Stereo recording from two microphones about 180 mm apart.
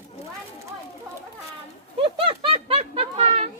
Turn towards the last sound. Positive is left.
turn(degrees=-35)  # may be behind; listen again after turning